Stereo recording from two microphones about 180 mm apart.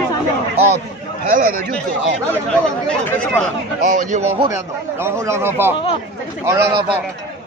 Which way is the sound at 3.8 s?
45° right (ahead or behind).